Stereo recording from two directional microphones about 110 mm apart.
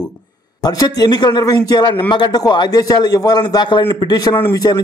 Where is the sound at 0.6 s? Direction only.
40° left (ahead or behind).